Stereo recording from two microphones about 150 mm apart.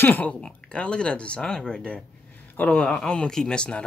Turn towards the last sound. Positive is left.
turn(degrees=5)  # may be behind; listen again after turning